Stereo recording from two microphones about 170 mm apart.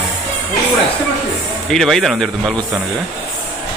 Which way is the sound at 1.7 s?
Centre (ahead or behind).